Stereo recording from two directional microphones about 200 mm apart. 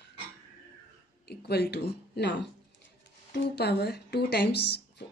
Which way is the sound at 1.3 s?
55° left (ahead or behind).